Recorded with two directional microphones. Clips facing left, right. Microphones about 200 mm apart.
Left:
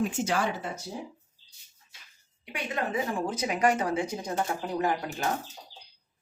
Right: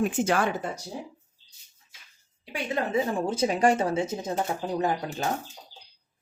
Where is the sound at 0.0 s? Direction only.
55° right (ahead or behind).